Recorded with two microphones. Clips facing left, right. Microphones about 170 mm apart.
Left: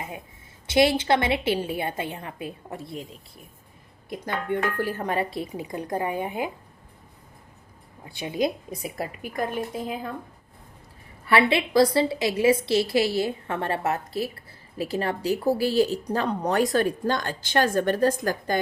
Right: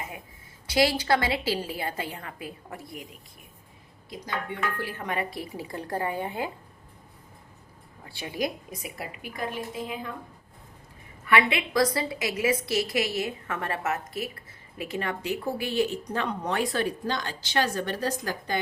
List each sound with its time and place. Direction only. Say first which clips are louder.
0.7 s a woman's voice: left 3 dB; 25° left (ahead or behind)
4.1 s a woman's voice: left 6 dB; 55° left (ahead or behind); by 6.5 s 15° left (ahead or behind)
8.0 s a woman's voice: left 5 dB; 20° left (ahead or behind)
9.0 s a woman's voice: left 6 dB; 45° left (ahead or behind)
11.3 s a woman's voice: left 3 dB; 30° left (ahead or behind); by 18.6 s 45° left (ahead or behind)